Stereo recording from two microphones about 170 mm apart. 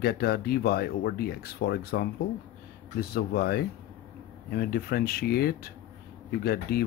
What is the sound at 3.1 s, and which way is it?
Speech, 65° left (ahead or behind).